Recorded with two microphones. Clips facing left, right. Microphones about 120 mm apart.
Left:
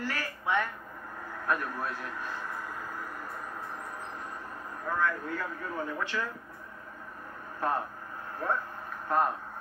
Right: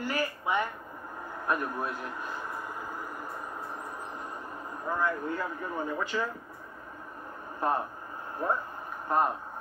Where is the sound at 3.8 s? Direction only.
15° right (ahead or behind).